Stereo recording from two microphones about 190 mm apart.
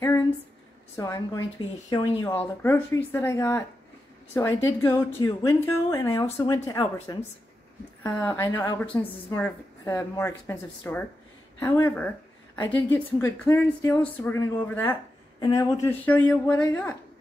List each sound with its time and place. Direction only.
0.9 s a woman's voice: 20° left (ahead or behind)
2.3 s speech: 10° left (ahead or behind)